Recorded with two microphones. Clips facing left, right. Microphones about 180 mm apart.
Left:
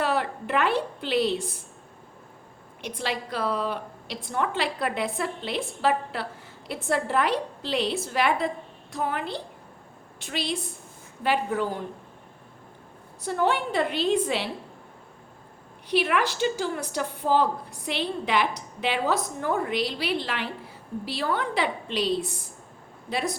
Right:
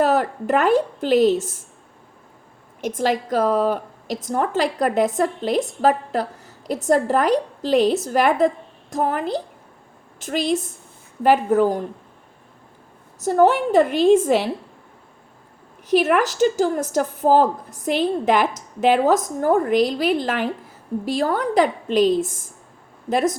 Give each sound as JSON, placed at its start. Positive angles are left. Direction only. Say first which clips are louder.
{"t": 0.0, "sound": "a woman's voice", "louder": "right 8 dB", "side_deg": -45}
{"t": 2.8, "sound": "a woman's voice", "louder": "right 10 dB", "side_deg": -45}
{"t": 13.1, "sound": "a woman's voice", "louder": "right 9 dB", "side_deg": -45}
{"t": 15.9, "sound": "a woman's voice", "louder": "right 7 dB", "side_deg": -45}